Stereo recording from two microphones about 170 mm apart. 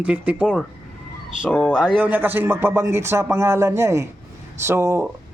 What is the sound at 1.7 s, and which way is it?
A man's voice, 5° right (ahead or behind).